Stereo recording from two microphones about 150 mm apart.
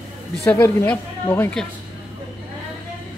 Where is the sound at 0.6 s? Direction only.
15° left (ahead or behind).